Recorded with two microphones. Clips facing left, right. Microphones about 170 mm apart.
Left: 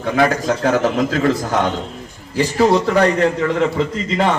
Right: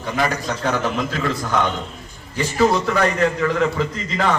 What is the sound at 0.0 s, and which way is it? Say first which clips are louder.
A man's voice: left 6 dB; 55° left (ahead or behind).